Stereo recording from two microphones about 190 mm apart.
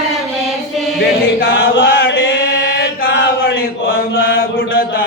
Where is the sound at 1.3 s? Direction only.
55° left (ahead or behind).